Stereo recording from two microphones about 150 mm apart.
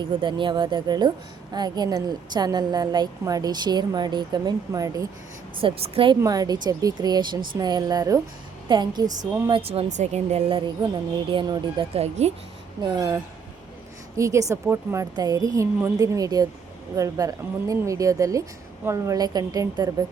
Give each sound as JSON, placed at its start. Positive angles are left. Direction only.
{"t": 0.0, "sound": "a woman's voice", "side_deg": -30}
{"t": 5.5, "sound": "a woman's voice", "side_deg": -40}
{"t": 6.2, "sound": "a woman's voice", "side_deg": -25}
{"t": 9.5, "sound": "a woman's voice", "side_deg": -40}
{"t": 11.3, "sound": "a woman's voice", "side_deg": -30}
{"t": 11.9, "sound": "speech", "side_deg": -45}
{"t": 12.8, "sound": "a woman's voice", "side_deg": -25}
{"t": 14.2, "sound": "a woman's voice", "side_deg": -20}